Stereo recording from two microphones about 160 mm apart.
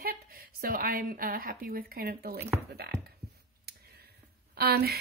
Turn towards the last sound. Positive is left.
turn(degrees=-80)